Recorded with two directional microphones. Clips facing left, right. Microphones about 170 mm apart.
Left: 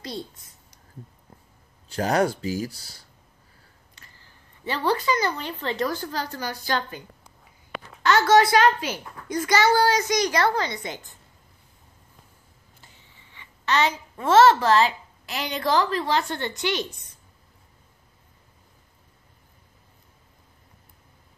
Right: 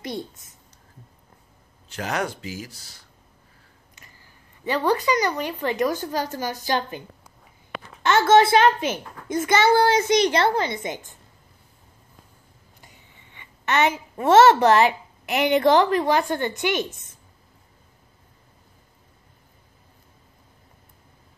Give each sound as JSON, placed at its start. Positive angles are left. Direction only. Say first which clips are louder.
{"t": 1.9, "sound": "speech", "louder": "left 5 dB", "side_deg": 35}
{"t": 4.8, "sound": "speech", "louder": "right 1 dB", "side_deg": -15}
{"t": 8.0, "sound": "a child's voice", "louder": "right 2 dB", "side_deg": -25}
{"t": 13.7, "sound": "a child's voice", "louder": "right 2 dB", "side_deg": -20}